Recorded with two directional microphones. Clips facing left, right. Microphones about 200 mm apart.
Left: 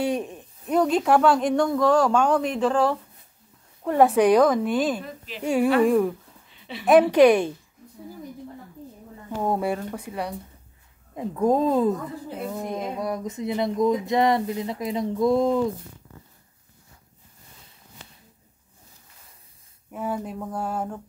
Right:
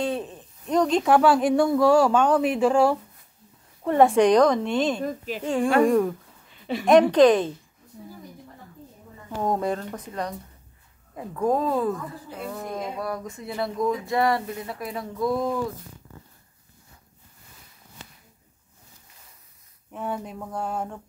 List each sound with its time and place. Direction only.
0.0 s speech: 15° left (ahead or behind); by 3.0 s 10° right (ahead or behind)
3.8 s a woman's voice: centre (ahead or behind)
5.0 s speech: 45° right (ahead or behind)
5.4 s a woman's voice: 10° left (ahead or behind)
9.4 s speech: 5° left (ahead or behind)
11.1 s speech: 20° left (ahead or behind)
19.9 s a woman's voice: 5° left (ahead or behind)